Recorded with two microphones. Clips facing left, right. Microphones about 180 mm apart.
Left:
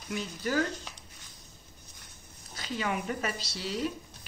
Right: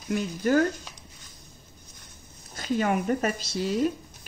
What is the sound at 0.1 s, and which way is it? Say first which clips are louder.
Speech: right 8 dB; 50° right (ahead or behind).